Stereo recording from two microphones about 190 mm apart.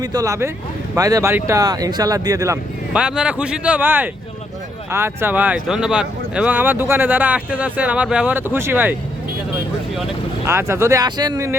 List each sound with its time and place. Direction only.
0.0 s speech: 20° right (ahead or behind)
2.9 s speech: 5° right (ahead or behind)
10.4 s speech: 15° right (ahead or behind)